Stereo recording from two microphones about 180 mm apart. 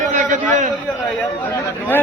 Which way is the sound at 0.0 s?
45° right (ahead or behind).